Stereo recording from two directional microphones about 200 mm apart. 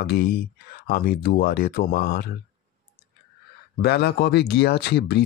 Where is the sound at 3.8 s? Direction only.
55° left (ahead or behind).